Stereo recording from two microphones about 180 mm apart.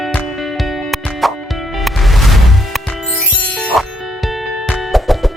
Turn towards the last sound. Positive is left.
turn(degrees=0)  # may be behind; listen again after turning